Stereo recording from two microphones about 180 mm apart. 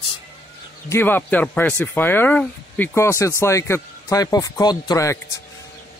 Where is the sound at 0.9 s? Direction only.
10° left (ahead or behind).